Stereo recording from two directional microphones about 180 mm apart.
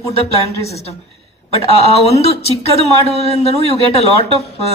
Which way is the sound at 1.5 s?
35° left (ahead or behind).